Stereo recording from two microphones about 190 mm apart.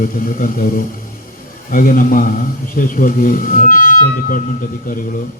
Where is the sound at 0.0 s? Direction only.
50° left (ahead or behind).